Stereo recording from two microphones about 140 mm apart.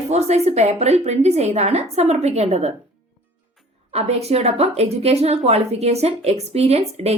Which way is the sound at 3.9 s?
50° right (ahead or behind).